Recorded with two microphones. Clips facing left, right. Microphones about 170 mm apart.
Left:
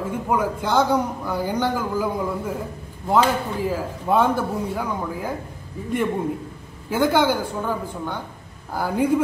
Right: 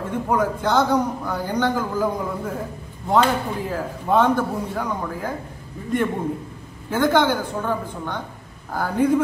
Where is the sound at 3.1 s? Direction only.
5° left (ahead or behind).